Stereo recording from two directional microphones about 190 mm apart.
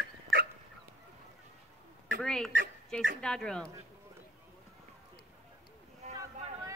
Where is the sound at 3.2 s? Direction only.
5° left (ahead or behind).